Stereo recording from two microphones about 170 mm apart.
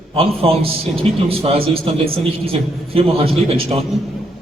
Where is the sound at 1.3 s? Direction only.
35° right (ahead or behind).